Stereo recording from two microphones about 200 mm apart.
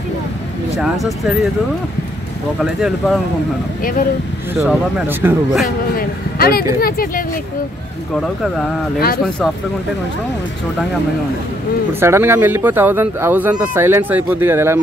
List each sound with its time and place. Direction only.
0.7 s speech: centre (ahead or behind)
2.6 s speech: 5° right (ahead or behind)
4.6 s speech: 10° right (ahead or behind)
5.9 s speech: 50° left (ahead or behind)
11.9 s speech: 10° right (ahead or behind)